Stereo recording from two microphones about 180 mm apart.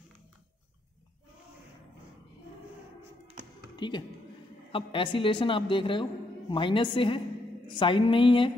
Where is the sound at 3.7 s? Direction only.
25° left (ahead or behind).